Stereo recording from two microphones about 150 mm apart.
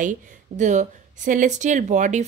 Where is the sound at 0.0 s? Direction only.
55° right (ahead or behind).